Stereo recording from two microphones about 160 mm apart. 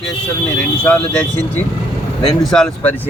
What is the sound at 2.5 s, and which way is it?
Speech, 5° left (ahead or behind).